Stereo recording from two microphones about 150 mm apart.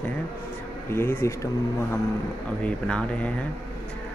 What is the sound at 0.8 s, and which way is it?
Speech, 15° left (ahead or behind).